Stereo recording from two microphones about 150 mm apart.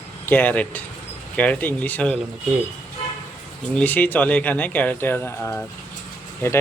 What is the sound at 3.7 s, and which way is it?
Speech, 10° left (ahead or behind).